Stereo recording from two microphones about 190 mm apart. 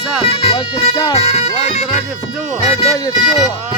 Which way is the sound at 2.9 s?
20° left (ahead or behind).